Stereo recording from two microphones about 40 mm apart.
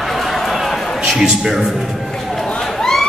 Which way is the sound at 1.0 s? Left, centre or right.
Centre.